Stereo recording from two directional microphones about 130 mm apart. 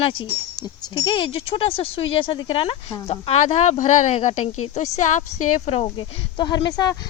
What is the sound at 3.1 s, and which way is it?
Speech, 55° left (ahead or behind).